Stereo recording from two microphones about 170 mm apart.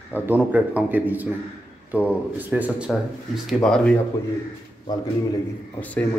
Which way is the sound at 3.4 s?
Centre (ahead or behind).